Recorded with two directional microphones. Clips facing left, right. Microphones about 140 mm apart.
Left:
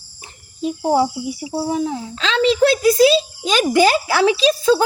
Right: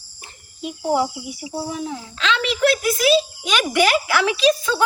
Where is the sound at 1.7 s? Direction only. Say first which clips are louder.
Left 7 dB; 30° left (ahead or behind).